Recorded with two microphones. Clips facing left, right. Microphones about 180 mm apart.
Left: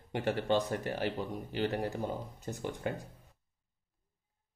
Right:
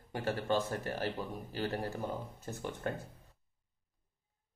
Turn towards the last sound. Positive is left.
turn(degrees=10)  # may be behind; listen again after turning